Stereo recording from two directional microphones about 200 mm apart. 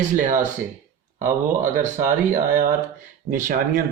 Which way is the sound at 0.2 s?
40° right (ahead or behind).